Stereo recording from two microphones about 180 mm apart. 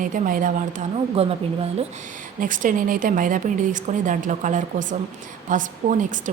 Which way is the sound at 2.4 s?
50° right (ahead or behind).